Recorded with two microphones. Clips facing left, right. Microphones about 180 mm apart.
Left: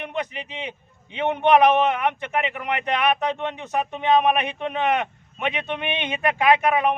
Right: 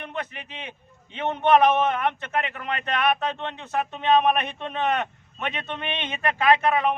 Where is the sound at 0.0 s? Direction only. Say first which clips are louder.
Left 4 dB; 15° left (ahead or behind).